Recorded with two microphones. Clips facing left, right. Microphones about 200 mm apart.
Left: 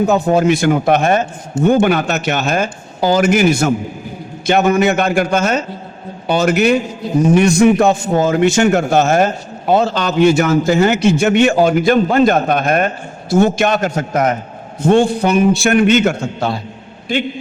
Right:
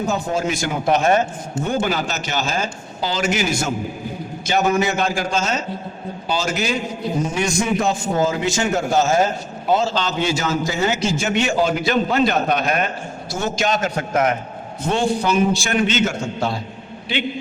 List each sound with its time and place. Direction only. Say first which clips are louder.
0.1 s a man's voice: left 9 dB; 60° left (ahead or behind)
17.1 s a man's voice: left 6 dB; 45° left (ahead or behind)